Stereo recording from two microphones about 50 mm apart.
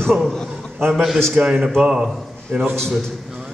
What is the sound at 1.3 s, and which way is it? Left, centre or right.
A man's voice, centre.